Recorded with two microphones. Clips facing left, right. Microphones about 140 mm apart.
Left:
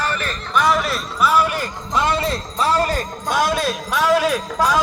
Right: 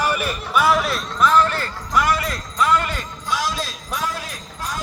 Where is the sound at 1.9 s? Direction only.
25° left (ahead or behind); by 4.8 s 90° left.